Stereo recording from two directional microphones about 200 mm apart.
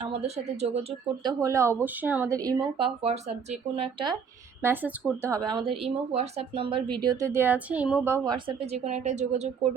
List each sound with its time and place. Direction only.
0.0 s speech: 30° right (ahead or behind)
1.2 s a woman's voice: 20° right (ahead or behind)
4.6 s a woman's voice: 10° right (ahead or behind)
8.7 s speech: 35° right (ahead or behind)